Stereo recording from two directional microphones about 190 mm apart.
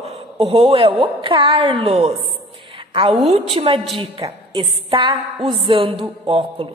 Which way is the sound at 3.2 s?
30° right (ahead or behind).